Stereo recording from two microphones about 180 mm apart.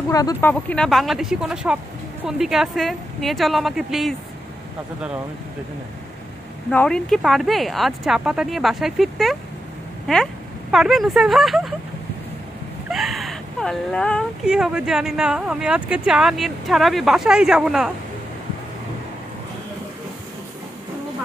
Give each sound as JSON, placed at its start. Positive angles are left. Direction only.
{"t": 0.1, "sound": "speech", "side_deg": 20}
{"t": 0.5, "sound": "speech", "side_deg": 5}
{"t": 6.7, "sound": "speech", "side_deg": 5}
{"t": 12.9, "sound": "speech", "side_deg": 0}